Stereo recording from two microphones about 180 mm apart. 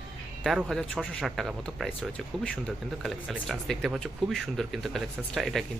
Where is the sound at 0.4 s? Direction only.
Centre (ahead or behind).